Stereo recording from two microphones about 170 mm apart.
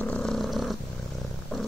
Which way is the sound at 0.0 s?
5° left (ahead or behind).